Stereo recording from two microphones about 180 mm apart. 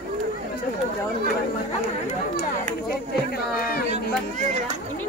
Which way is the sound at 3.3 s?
55° left (ahead or behind).